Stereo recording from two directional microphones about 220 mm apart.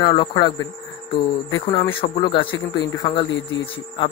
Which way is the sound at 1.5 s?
20° left (ahead or behind).